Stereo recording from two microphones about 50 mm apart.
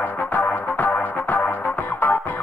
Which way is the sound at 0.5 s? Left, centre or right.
Left.